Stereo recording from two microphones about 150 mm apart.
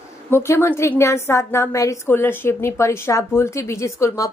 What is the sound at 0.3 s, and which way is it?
A woman's voice, 15° left (ahead or behind).